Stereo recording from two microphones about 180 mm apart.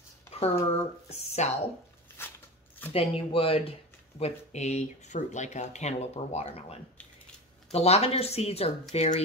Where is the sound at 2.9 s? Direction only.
30° left (ahead or behind).